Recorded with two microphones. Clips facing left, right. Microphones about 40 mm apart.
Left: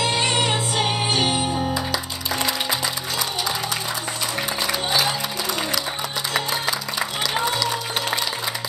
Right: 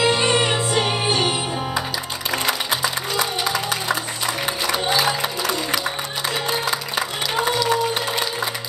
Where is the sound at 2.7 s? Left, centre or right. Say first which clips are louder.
Right 3 dB; right.